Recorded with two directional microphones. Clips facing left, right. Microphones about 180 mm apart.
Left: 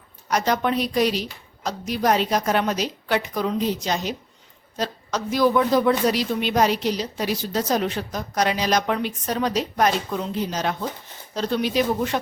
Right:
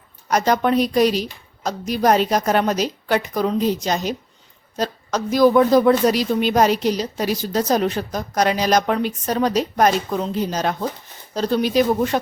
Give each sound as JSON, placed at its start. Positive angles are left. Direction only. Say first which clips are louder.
{"t": 0.3, "sound": "speech", "louder": "right 4 dB", "side_deg": -45}